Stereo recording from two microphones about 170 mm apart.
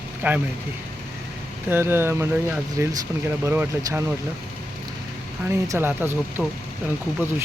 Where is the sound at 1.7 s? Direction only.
15° right (ahead or behind).